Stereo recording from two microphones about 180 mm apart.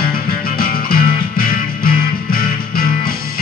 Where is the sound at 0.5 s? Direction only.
55° left (ahead or behind).